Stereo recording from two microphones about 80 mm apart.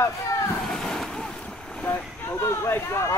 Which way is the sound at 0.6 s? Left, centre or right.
Centre.